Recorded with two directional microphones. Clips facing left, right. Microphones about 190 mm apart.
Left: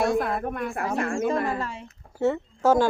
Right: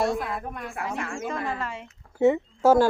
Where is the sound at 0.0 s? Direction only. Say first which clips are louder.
Left 3 dB; 55° left (ahead or behind).